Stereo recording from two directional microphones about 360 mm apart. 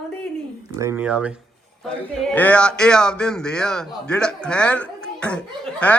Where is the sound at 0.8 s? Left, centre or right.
Centre.